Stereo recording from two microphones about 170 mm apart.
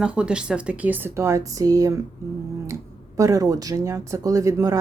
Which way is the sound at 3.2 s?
20° right (ahead or behind).